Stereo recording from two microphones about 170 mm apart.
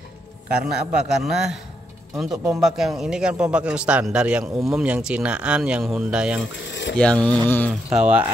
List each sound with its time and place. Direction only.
0.5 s a man's voice: 5° right (ahead or behind)
6.7 s a sound: 90° left
7.0 s speech: 5° left (ahead or behind)
7.7 s a man's voice: 5° right (ahead or behind)